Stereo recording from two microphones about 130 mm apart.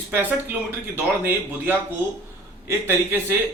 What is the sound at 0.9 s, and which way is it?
Speech, 15° right (ahead or behind).